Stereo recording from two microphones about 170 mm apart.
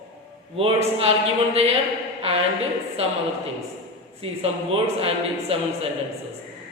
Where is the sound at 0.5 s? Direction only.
35° right (ahead or behind).